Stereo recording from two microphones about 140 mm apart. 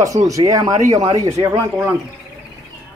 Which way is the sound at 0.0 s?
25° right (ahead or behind).